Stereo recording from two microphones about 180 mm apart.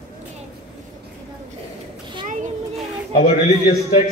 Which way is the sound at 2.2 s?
45° right (ahead or behind).